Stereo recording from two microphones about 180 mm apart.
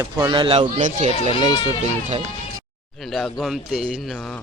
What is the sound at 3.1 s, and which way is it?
Speech, centre (ahead or behind).